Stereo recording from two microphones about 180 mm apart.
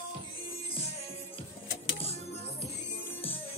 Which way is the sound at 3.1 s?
10° left (ahead or behind).